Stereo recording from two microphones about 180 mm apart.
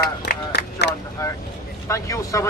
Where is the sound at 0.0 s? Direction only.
60° left (ahead or behind).